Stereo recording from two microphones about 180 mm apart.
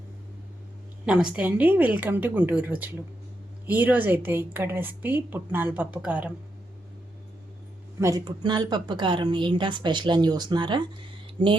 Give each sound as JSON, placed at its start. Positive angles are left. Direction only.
{"t": 1.0, "sound": "a woman's voice", "side_deg": -5}
{"t": 7.9, "sound": "a woman's voice", "side_deg": -20}
{"t": 11.4, "sound": "speech", "side_deg": -40}